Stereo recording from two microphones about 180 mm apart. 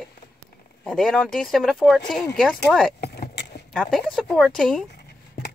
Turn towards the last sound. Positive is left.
turn(degrees=5)  # may be behind; listen again after turning